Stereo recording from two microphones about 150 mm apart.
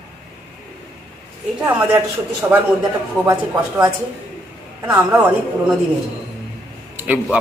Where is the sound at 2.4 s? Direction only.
20° right (ahead or behind).